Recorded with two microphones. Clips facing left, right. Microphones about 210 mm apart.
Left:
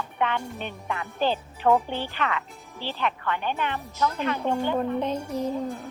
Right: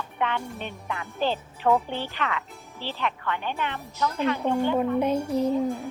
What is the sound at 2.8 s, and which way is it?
Speech, 45° left (ahead or behind).